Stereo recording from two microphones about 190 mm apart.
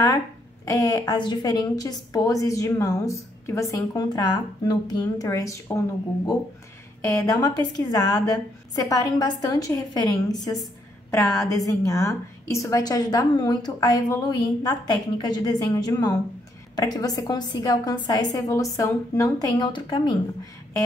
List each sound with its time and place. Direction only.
0.7 s a woman's voice: 15° left (ahead or behind)
11.4 s a woman's voice: 15° left (ahead or behind)